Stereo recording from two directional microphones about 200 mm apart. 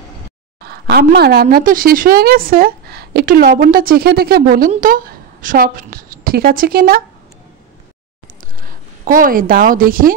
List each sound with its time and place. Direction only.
0.6 s speech: 50° right (ahead or behind)
8.5 s a woman's voice: 45° right (ahead or behind)